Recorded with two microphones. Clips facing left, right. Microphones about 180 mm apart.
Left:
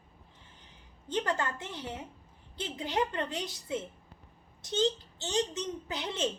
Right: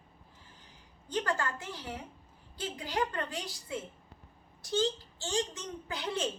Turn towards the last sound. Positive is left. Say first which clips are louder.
# left 1 dB
turn(degrees=25)  # may be behind; listen again after turning